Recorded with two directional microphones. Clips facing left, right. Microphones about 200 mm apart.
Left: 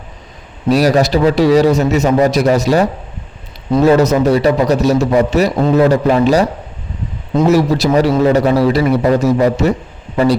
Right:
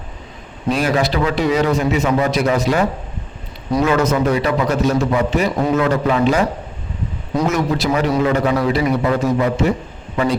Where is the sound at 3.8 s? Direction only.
40° left (ahead or behind).